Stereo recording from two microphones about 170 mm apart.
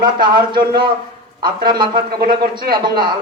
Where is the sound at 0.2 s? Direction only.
30° right (ahead or behind).